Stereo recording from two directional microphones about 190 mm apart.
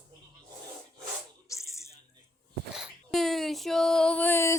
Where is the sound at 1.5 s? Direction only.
15° left (ahead or behind).